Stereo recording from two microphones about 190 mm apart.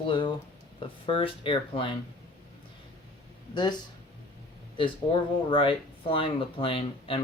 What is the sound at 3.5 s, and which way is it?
Speech, 20° left (ahead or behind).